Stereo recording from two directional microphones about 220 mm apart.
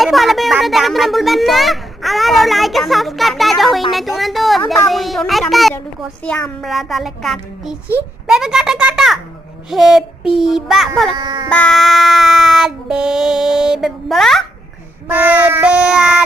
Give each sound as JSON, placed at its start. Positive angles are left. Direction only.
{"t": 0.0, "sound": "speech", "side_deg": 0}
{"t": 11.1, "sound": "speech", "side_deg": -20}
{"t": 11.4, "sound": "speech", "side_deg": 5}
{"t": 15.0, "sound": "child singing", "side_deg": -10}